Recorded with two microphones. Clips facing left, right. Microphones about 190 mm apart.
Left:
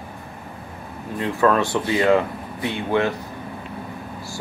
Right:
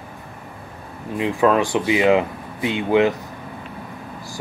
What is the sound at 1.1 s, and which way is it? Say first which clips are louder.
Speech: right 2 dB; 15° right (ahead or behind).